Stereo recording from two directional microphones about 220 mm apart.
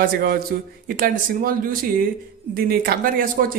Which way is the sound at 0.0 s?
40° right (ahead or behind).